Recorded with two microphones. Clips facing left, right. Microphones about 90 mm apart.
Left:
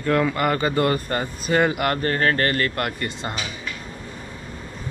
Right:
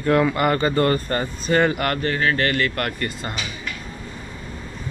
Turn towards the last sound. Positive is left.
turn(degrees=20)  # may be behind; listen again after turning